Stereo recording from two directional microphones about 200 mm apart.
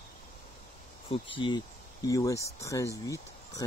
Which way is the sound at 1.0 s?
25° left (ahead or behind).